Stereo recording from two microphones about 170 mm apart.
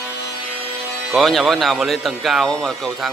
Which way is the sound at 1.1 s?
Centre (ahead or behind).